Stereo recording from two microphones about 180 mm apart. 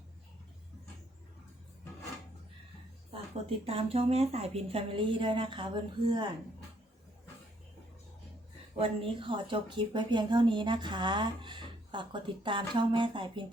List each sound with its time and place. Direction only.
3.1 s speech: 35° right (ahead or behind)
9.0 s speech: 30° right (ahead or behind)